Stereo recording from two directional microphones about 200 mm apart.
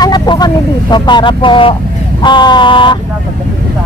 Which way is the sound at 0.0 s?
20° left (ahead or behind).